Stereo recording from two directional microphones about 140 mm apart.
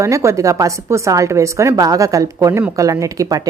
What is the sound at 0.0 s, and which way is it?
Speech, 20° right (ahead or behind).